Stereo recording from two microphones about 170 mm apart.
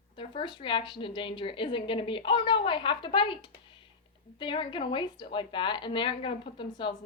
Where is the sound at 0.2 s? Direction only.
30° left (ahead or behind).